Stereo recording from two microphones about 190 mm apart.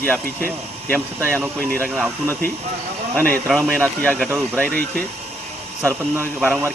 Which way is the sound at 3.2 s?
5° left (ahead or behind).